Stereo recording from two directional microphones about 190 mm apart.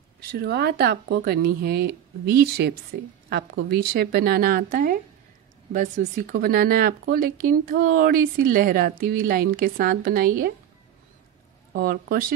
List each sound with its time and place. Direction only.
0.2 s speech: 55° right (ahead or behind)
3.7 s speech: 55° right (ahead or behind)
11.7 s speech: 50° right (ahead or behind)